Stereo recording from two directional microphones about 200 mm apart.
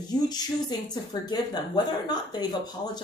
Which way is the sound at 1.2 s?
20° left (ahead or behind).